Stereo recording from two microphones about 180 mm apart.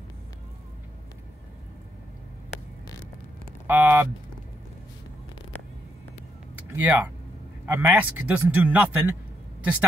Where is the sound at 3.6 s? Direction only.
10° right (ahead or behind).